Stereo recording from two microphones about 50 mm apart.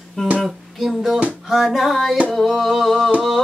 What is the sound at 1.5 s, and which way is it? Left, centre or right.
Music, centre.